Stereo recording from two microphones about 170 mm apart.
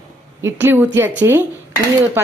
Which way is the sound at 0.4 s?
15° right (ahead or behind).